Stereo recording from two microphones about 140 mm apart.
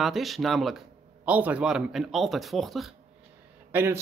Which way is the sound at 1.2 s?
10° right (ahead or behind).